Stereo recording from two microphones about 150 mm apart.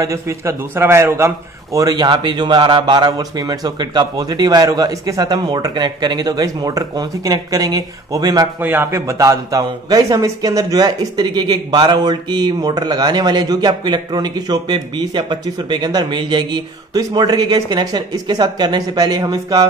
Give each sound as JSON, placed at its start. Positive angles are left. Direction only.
{"t": 0.0, "sound": "speech", "side_deg": -20}
{"t": 8.5, "sound": "speech", "side_deg": -15}